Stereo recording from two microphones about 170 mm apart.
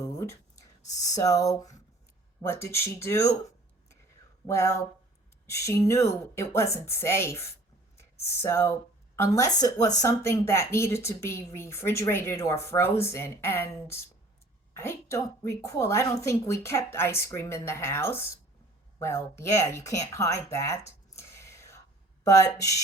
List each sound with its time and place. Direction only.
0.0 s a sound: 15° left (ahead or behind)
0.9 s a woman's voice: 20° left (ahead or behind)
4.4 s a woman's voice: 15° left (ahead or behind)